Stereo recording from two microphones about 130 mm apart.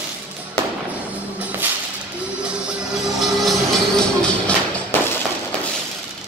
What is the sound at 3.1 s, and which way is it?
Music, centre (ahead or behind).